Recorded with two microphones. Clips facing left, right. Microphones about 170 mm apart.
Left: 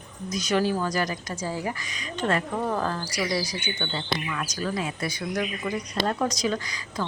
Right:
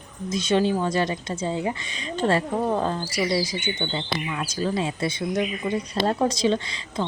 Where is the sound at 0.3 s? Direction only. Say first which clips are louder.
Right 3 dB; 25° right (ahead or behind).